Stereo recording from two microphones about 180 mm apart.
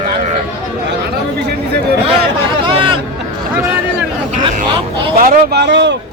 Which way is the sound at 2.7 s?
30° right (ahead or behind).